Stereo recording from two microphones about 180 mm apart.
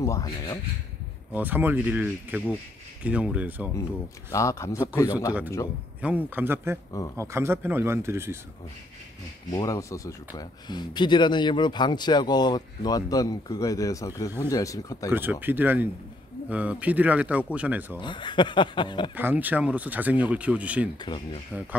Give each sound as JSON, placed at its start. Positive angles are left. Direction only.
{"t": 0.0, "sound": "speech", "side_deg": 15}
{"t": 1.3, "sound": "speech", "side_deg": -10}
{"t": 4.3, "sound": "speech", "side_deg": 15}
{"t": 5.9, "sound": "speech", "side_deg": -10}
{"t": 9.5, "sound": "speech", "side_deg": 20}
{"t": 15.0, "sound": "speech", "side_deg": -10}
{"t": 18.0, "sound": "speech", "side_deg": 25}
{"t": 19.1, "sound": "speech", "side_deg": -10}
{"t": 21.0, "sound": "speech", "side_deg": 25}